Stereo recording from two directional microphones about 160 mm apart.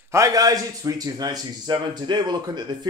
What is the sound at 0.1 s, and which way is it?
A man's voice, 20° right (ahead or behind).